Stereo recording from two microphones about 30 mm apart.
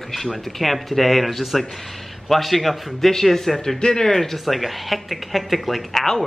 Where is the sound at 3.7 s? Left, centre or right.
Left.